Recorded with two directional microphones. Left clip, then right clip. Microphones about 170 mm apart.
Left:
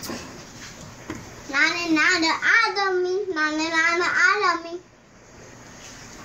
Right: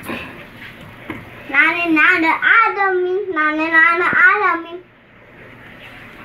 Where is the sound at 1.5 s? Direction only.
10° left (ahead or behind).